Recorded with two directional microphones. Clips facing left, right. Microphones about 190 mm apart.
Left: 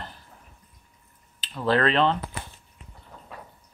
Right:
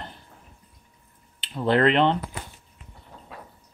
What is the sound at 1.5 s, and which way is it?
Speech, 25° right (ahead or behind).